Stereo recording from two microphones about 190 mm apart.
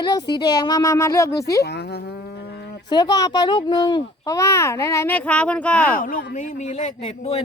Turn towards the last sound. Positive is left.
turn(degrees=30)  # may be behind; listen again after turning